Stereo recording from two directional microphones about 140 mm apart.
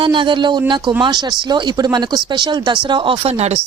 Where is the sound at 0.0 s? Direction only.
35° right (ahead or behind).